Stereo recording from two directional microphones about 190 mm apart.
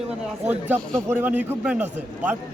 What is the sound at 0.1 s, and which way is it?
A man's voice, 5° right (ahead or behind).